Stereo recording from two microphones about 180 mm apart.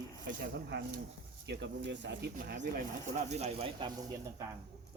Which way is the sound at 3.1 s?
40° right (ahead or behind).